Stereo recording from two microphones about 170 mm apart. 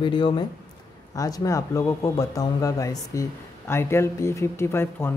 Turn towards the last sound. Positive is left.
turn(degrees=15)  # may be behind; listen again after turning